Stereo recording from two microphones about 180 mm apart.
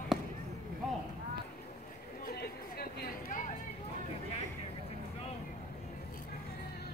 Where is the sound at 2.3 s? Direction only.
55° left (ahead or behind).